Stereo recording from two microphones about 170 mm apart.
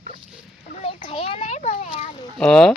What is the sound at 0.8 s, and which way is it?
Children playing, 35° left (ahead or behind).